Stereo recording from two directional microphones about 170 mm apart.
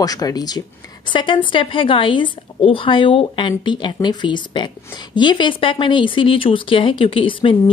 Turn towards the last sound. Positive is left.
turn(degrees=30)  # may be behind; listen again after turning